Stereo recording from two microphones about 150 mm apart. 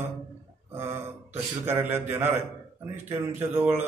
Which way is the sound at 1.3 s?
15° right (ahead or behind).